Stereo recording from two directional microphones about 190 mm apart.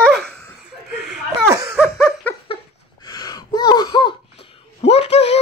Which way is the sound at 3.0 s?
20° left (ahead or behind).